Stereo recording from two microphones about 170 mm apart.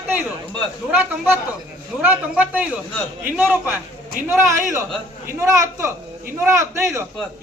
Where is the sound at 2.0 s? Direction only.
10° right (ahead or behind).